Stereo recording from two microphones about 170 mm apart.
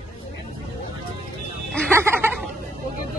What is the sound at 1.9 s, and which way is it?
Speech, 15° right (ahead or behind).